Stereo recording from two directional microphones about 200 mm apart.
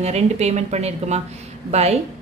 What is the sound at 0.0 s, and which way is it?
A woman's voice, 35° right (ahead or behind).